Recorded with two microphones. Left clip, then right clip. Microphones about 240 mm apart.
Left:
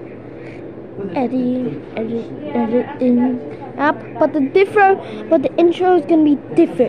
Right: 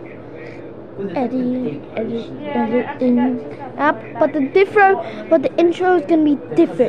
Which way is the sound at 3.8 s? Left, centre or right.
Centre.